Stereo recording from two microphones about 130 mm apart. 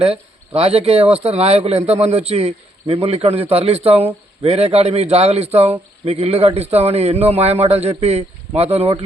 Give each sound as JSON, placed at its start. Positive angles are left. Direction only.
{"t": 0.0, "sound": "speech", "side_deg": -50}